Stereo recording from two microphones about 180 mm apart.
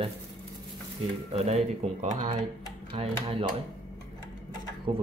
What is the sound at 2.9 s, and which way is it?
Speech, 30° right (ahead or behind).